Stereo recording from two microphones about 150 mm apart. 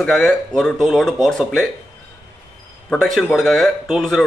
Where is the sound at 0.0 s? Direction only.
Centre (ahead or behind).